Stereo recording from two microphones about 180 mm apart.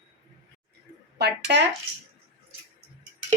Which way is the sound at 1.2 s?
70° right (ahead or behind).